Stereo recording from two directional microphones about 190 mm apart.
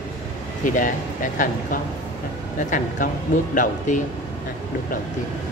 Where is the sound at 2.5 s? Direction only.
45° left (ahead or behind).